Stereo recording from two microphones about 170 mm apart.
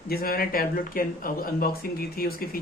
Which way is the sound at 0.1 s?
60° left (ahead or behind).